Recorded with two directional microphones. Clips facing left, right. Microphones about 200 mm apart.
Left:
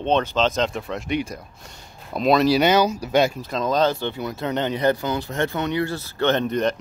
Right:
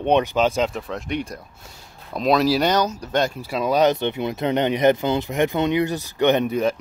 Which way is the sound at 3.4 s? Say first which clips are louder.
Right 2 dB; 10° right (ahead or behind).